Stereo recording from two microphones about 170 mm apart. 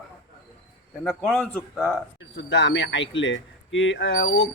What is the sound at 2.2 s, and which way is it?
Speech, 90° left.